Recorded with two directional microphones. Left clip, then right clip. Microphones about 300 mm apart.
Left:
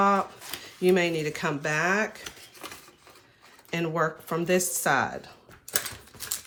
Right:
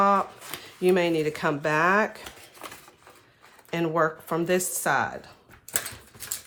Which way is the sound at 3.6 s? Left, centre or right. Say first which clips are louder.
Right 3 dB; centre.